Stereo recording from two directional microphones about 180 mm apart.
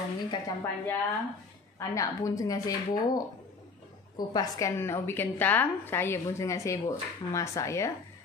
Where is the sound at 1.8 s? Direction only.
20° left (ahead or behind).